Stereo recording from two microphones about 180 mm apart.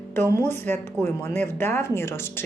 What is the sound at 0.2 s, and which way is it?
Speech, 15° left (ahead or behind).